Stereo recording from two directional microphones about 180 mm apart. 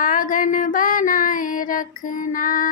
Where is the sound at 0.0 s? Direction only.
50° left (ahead or behind).